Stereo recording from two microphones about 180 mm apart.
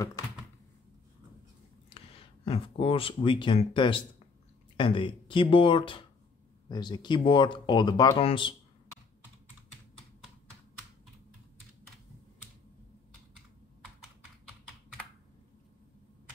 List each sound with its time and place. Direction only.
1.9 s speech: 30° left (ahead or behind)